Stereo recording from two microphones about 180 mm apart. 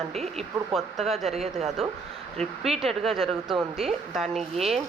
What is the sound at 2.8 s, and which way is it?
A woman's voice, centre (ahead or behind).